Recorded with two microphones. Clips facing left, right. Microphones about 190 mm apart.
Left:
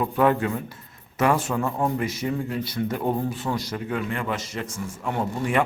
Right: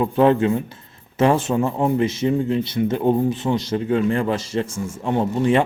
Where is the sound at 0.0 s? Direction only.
25° right (ahead or behind).